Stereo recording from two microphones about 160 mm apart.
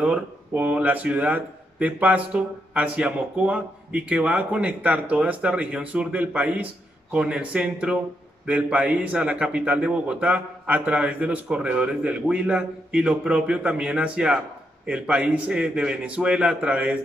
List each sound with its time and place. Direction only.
0.0 s speech: 10° right (ahead or behind)